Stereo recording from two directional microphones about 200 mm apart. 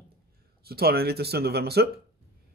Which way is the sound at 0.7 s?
50° right (ahead or behind).